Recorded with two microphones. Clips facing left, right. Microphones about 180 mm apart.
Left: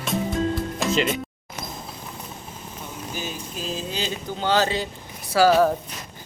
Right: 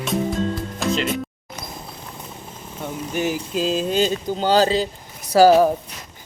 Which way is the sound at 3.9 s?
40° right (ahead or behind).